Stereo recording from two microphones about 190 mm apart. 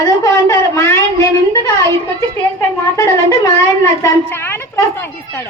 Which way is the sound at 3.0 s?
15° left (ahead or behind).